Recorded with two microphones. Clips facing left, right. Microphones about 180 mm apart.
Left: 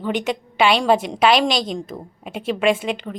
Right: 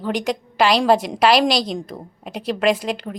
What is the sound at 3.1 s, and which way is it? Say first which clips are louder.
Speech: even; 20° right (ahead or behind).